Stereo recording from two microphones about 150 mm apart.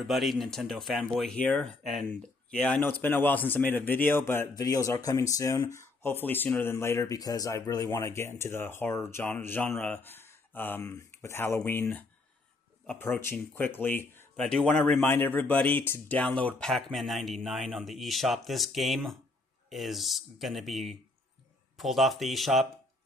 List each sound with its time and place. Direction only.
0.0 s speech: centre (ahead or behind)